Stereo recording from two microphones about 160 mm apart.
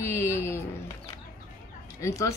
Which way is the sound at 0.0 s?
15° left (ahead or behind).